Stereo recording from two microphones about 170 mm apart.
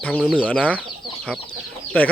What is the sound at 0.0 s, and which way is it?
Speech, 5° left (ahead or behind).